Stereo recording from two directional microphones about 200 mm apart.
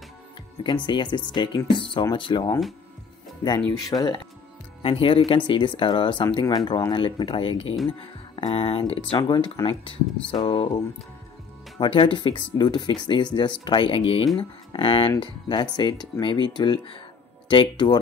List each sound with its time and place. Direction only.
0.7 s speech: 25° left (ahead or behind)
3.9 s speech: 20° left (ahead or behind)
11.8 s speech: 25° left (ahead or behind)